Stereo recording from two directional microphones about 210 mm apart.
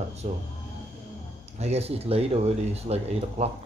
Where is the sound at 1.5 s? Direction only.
30° right (ahead or behind).